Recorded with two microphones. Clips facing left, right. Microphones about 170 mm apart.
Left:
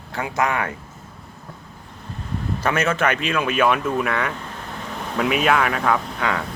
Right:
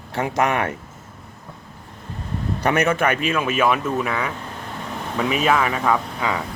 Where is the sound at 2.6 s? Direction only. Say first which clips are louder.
Right 2 dB; 15° right (ahead or behind).